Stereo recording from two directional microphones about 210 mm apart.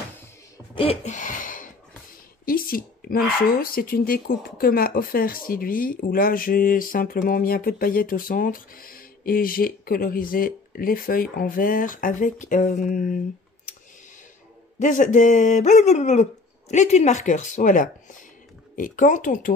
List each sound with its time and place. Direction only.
0.7 s a sound: 30° left (ahead or behind)
2.4 s speech: 45° left (ahead or behind)
14.8 s speech: 35° left (ahead or behind)